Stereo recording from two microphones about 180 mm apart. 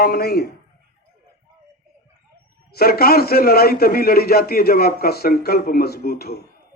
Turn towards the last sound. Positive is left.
turn(degrees=60)  # may be behind; listen again after turning